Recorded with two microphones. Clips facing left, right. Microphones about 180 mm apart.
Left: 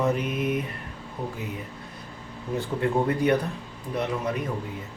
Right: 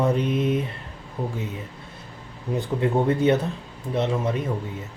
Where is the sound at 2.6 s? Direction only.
20° right (ahead or behind).